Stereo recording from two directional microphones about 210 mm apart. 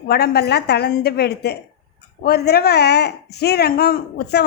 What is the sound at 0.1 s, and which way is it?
Speech, 50° left (ahead or behind).